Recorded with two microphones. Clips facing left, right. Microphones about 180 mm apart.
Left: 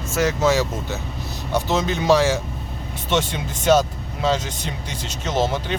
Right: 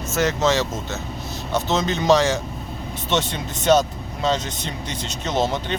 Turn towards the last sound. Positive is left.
turn(degrees=5)  # may be behind; listen again after turning